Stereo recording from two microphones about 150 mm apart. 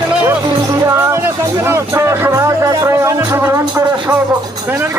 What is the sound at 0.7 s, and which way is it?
Speech, 20° right (ahead or behind).